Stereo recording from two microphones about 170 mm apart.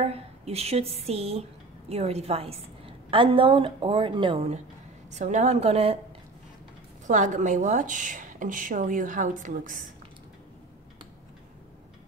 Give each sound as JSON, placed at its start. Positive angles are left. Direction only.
{"t": 0.0, "sound": "a woman's voice", "side_deg": -35}
{"t": 5.1, "sound": "a woman's voice", "side_deg": -45}
{"t": 7.1, "sound": "a woman's voice", "side_deg": -45}